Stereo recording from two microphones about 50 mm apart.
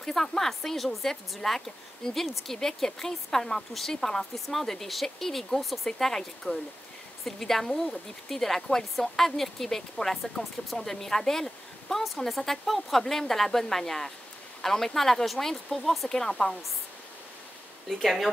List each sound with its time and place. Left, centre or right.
0.0 s a woman's voice: centre
17.8 s a woman's voice: centre